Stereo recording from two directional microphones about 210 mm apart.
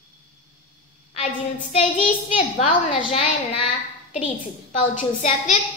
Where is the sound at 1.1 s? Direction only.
30° left (ahead or behind).